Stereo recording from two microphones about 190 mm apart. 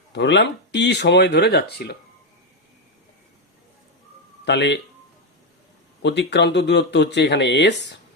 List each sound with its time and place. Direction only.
0.1 s speech: 65° left (ahead or behind)
4.4 s speech: 65° left (ahead or behind)
6.0 s speech: 65° left (ahead or behind)